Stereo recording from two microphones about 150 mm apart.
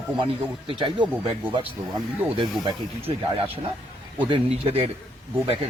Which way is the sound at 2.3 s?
35° right (ahead or behind).